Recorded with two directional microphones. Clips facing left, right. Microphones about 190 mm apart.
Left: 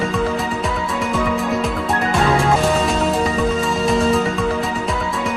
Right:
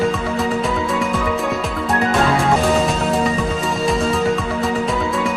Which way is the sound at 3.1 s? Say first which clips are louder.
Left 1 dB; centre (ahead or behind).